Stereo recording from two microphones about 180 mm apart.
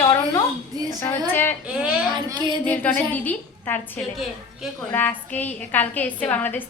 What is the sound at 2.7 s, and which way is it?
A woman's voice, 10° left (ahead or behind).